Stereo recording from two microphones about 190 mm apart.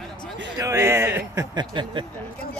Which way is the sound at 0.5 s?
15° right (ahead or behind).